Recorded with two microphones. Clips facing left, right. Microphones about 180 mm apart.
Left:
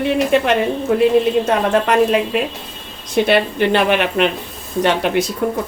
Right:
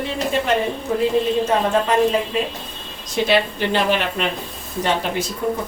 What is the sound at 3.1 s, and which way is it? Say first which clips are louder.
A woman's voice: left 4 dB; 60° left (ahead or behind).